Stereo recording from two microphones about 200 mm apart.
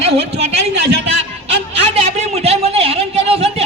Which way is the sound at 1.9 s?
30° right (ahead or behind).